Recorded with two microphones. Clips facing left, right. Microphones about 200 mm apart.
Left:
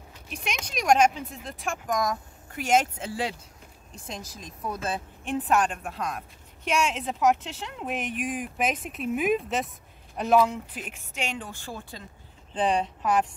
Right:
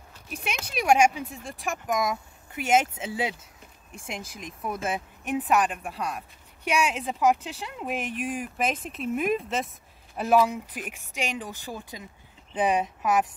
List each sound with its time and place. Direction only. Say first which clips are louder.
0.3 s speech: right 1 dB; 5° right (ahead or behind)
5.7 s speech: even; centre (ahead or behind)